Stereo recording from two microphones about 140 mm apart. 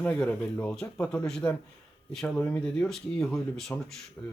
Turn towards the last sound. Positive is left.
turn(degrees=5)  # may be behind; listen again after turning